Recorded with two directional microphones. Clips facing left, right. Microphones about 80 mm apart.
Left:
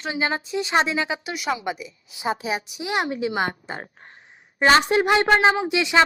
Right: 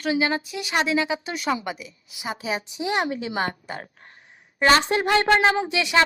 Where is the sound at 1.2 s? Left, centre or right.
Centre.